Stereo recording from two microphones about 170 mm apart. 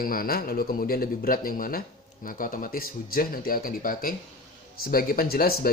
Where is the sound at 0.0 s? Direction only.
60° left (ahead or behind).